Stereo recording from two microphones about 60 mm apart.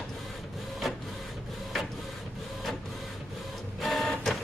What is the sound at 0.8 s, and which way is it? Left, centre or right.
Printer, centre.